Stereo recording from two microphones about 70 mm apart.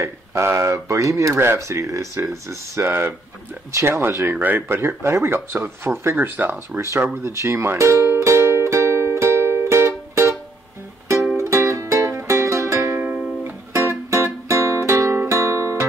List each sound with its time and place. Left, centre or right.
0.0 s speech: right
2.9 s speech: right
7.2 s music: right
11.3 s music: right